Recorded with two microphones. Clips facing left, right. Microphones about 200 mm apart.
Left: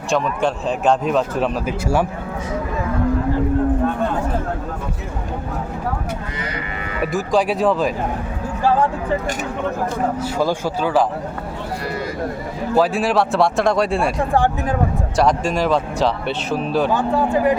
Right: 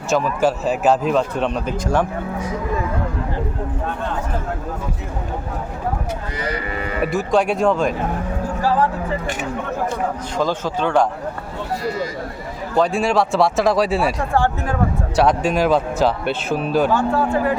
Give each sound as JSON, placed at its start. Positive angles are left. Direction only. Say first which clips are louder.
{"t": 0.1, "sound": "speech", "louder": "right 2 dB", "side_deg": -5}
{"t": 7.0, "sound": "speech", "louder": "even", "side_deg": 0}
{"t": 10.3, "sound": "speech", "louder": "left 1 dB", "side_deg": 10}
{"t": 12.7, "sound": "speech", "louder": "even", "side_deg": 5}
{"t": 14.3, "sound": "speech", "louder": "left 1 dB", "side_deg": 15}
{"t": 15.1, "sound": "speech", "louder": "right 1 dB", "side_deg": 0}
{"t": 16.9, "sound": "speech", "louder": "even", "side_deg": 15}